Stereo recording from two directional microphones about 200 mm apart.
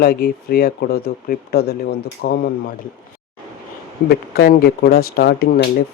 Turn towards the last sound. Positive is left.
turn(degrees=50)  # may be behind; listen again after turning